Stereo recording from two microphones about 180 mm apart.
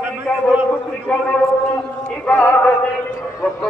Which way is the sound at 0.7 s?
10° left (ahead or behind).